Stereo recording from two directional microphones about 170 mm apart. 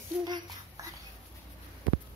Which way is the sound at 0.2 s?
20° right (ahead or behind).